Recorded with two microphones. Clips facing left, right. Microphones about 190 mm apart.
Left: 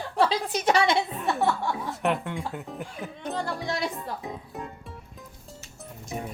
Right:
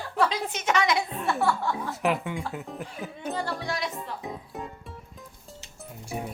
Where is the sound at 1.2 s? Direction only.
20° left (ahead or behind).